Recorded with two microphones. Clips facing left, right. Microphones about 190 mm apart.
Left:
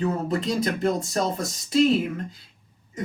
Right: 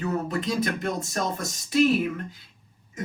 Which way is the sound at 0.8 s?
30° left (ahead or behind).